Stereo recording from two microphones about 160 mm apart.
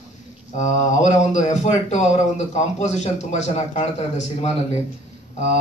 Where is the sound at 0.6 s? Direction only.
50° left (ahead or behind).